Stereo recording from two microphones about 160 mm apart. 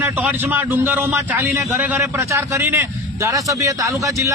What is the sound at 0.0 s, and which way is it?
A man's voice, 10° right (ahead or behind).